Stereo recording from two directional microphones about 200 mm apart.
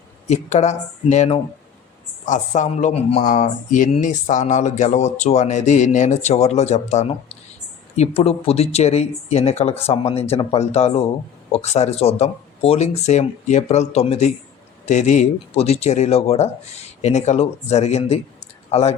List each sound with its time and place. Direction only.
0.3 s speech: 35° left (ahead or behind)